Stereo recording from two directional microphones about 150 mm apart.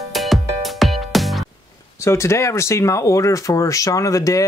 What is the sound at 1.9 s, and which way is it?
Speech, 20° left (ahead or behind).